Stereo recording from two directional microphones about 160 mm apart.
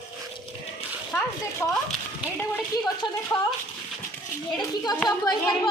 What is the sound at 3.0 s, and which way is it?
Speech, 25° left (ahead or behind).